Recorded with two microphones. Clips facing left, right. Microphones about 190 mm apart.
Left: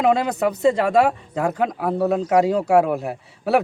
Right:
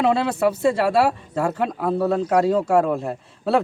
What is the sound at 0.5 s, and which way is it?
Speech, 5° right (ahead or behind).